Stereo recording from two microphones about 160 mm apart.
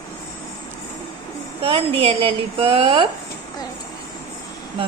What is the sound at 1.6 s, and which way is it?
A woman's voice, 35° right (ahead or behind).